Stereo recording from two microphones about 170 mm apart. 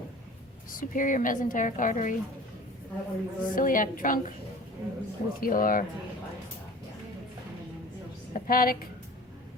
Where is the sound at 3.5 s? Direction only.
55° left (ahead or behind).